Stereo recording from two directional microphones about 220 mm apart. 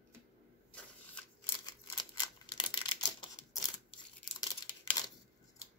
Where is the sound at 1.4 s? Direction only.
20° left (ahead or behind).